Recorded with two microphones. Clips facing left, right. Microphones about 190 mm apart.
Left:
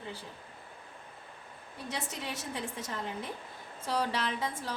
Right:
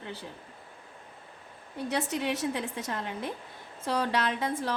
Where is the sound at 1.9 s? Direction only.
65° right (ahead or behind).